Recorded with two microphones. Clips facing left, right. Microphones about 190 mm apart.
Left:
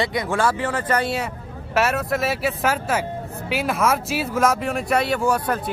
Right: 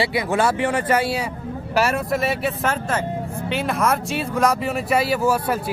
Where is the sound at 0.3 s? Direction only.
15° right (ahead or behind).